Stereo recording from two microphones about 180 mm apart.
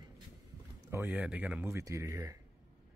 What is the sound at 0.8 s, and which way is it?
Speech, 15° right (ahead or behind).